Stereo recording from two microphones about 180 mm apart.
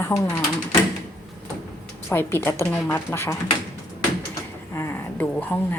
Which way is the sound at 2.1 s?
15° left (ahead or behind).